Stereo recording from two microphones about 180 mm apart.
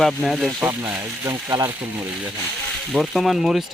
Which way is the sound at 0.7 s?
15° right (ahead or behind).